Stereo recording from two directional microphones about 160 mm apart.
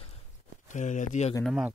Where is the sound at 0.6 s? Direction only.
50° left (ahead or behind).